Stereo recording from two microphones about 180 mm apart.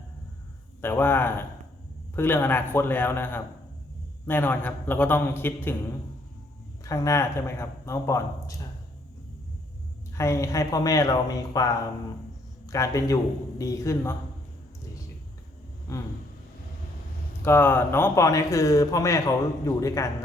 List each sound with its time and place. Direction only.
0.8 s speech: 10° left (ahead or behind)
6.8 s speech: 15° left (ahead or behind)
10.2 s speech: 15° left (ahead or behind)
17.4 s speech: 10° left (ahead or behind)